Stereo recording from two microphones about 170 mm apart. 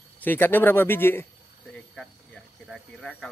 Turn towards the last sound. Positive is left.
turn(degrees=0)  # may be behind; listen again after turning